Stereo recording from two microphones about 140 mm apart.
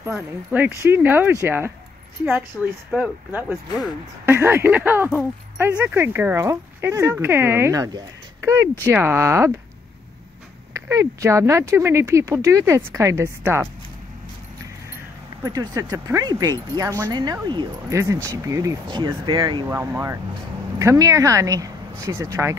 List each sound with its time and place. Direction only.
0.1 s speech: 10° right (ahead or behind)
2.6 s speech: 5° left (ahead or behind)
2.9 s speech: 10° right (ahead or behind)
10.7 s speech: 20° right (ahead or behind)
15.4 s speech: 25° right (ahead or behind)
18.9 s speech: 35° right (ahead or behind)
19.7 s speech: 15° right (ahead or behind)